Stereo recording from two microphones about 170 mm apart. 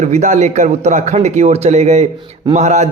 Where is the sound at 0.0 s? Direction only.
45° right (ahead or behind).